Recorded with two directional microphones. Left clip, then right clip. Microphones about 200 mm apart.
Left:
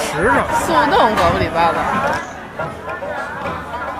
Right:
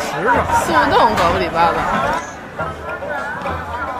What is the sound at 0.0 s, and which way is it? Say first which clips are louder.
Speech: left 1 dB; 50° left (ahead or behind).